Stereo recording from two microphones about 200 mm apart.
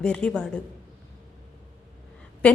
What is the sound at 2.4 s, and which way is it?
Speech, 5° left (ahead or behind).